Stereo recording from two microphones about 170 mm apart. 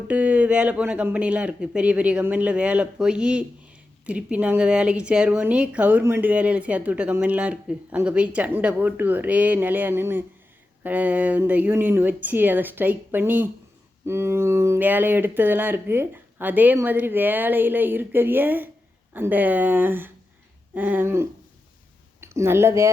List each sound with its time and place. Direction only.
0.1 s speech: 10° right (ahead or behind)